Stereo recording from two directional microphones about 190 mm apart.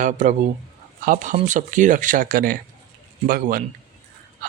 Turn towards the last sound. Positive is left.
turn(degrees=-50)  # may be behind; listen again after turning